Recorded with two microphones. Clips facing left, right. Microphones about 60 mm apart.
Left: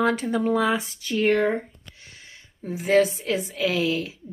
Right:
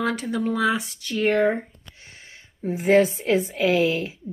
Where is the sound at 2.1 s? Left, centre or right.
Right.